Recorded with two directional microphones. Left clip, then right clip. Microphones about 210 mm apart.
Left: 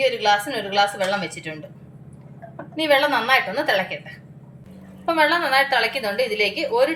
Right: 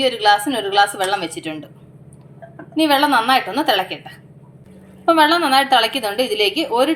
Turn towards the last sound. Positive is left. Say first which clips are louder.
# right 3 dB
turn(degrees=-35)  # may be behind; listen again after turning